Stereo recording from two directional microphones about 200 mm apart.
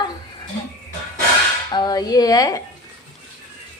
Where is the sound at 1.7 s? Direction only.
20° left (ahead or behind).